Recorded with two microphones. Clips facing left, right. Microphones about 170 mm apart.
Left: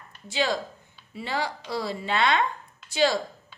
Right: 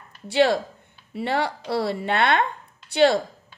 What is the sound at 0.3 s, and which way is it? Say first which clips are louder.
A woman's voice: right 8 dB; 60° right (ahead or behind).